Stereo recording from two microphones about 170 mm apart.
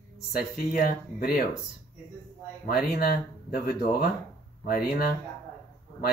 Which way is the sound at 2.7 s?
65° left (ahead or behind).